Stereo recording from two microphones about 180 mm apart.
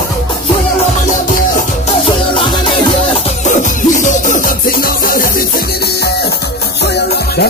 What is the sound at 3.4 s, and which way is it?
Music, 45° left (ahead or behind).